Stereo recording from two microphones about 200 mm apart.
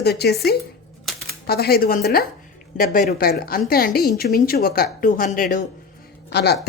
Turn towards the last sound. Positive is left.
turn(degrees=55)  # may be behind; listen again after turning